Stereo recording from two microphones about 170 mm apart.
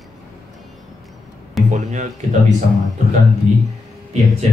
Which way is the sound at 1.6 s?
45° right (ahead or behind).